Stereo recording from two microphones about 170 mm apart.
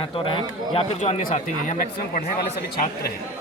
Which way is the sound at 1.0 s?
40° left (ahead or behind).